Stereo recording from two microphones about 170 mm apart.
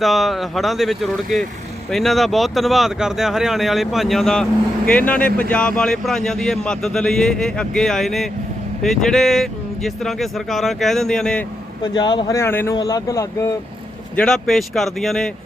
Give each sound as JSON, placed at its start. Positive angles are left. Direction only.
{"t": 0.0, "sound": "speech", "side_deg": 0}
{"t": 11.8, "sound": "speech", "side_deg": 25}
{"t": 14.2, "sound": "speech", "side_deg": 5}